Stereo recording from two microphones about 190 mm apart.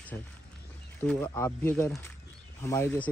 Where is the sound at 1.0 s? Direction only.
10° left (ahead or behind).